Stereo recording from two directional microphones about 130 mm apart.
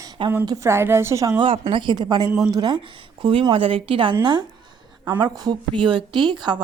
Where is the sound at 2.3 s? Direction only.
5° right (ahead or behind).